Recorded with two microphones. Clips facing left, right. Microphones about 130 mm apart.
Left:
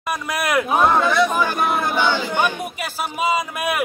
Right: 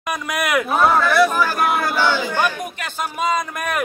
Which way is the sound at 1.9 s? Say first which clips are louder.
Right 1 dB; 20° left (ahead or behind).